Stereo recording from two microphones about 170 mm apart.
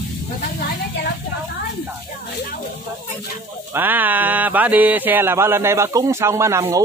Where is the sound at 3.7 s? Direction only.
10° right (ahead or behind).